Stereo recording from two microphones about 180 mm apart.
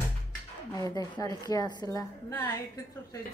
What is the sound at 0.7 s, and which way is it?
A woman's voice, 20° left (ahead or behind).